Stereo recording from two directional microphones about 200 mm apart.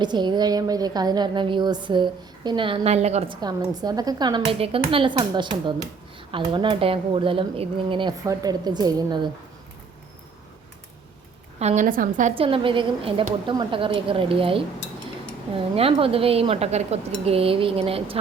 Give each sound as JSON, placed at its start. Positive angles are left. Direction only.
{"t": 0.0, "sound": "a woman's voice", "side_deg": -20}
{"t": 11.6, "sound": "a woman's voice", "side_deg": -35}
{"t": 12.3, "sound": "a woman's voice", "side_deg": -25}
{"t": 15.7, "sound": "a woman's voice", "side_deg": -30}